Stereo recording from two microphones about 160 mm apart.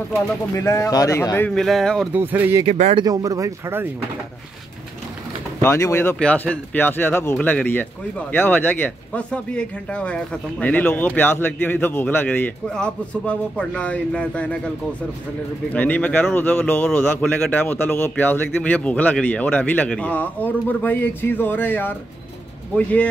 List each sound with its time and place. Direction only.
0.1 s speech: 20° left (ahead or behind)
1.5 s speech: centre (ahead or behind)
2.1 s speech: 10° right (ahead or behind)
2.7 s speech: 45° right (ahead or behind)
3.0 s speech: 25° right (ahead or behind)
5.6 s speech: 15° left (ahead or behind)
15.7 s speech: 10° left (ahead or behind)